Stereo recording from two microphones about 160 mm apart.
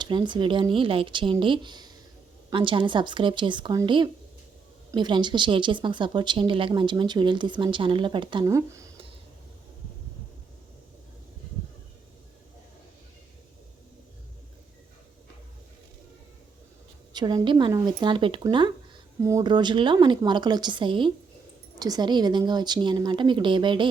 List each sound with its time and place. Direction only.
0.0 s speech: 30° right (ahead or behind)
8.4 s speech: 20° right (ahead or behind)
17.2 s speech: 25° right (ahead or behind)